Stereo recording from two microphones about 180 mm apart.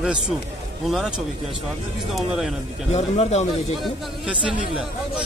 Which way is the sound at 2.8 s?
35° left (ahead or behind).